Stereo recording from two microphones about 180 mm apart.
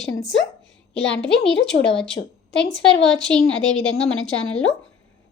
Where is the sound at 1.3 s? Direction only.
70° left (ahead or behind).